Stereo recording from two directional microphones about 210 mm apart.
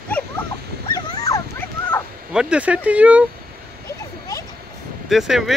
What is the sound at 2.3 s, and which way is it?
Speech, 5° right (ahead or behind).